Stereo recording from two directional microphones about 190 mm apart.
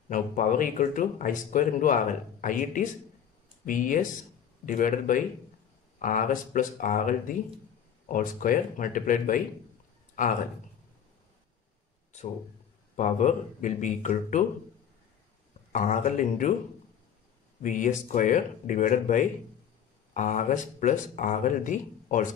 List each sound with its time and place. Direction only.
0.1 s speech: 45° left (ahead or behind)
12.9 s speech: 40° left (ahead or behind)
15.7 s speech: 40° left (ahead or behind)
17.6 s speech: 45° left (ahead or behind)